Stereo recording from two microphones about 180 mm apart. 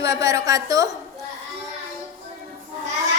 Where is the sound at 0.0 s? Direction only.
20° right (ahead or behind).